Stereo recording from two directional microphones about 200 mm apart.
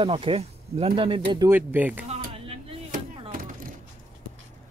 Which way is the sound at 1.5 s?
10° right (ahead or behind).